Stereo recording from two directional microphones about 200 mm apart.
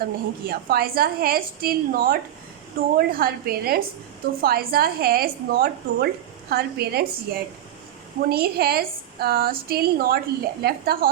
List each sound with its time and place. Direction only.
0.0 s a woman's voice: 50° right (ahead or behind)